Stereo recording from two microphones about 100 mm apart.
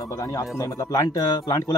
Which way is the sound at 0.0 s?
35° left (ahead or behind).